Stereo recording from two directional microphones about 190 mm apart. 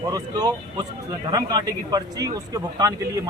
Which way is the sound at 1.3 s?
20° right (ahead or behind).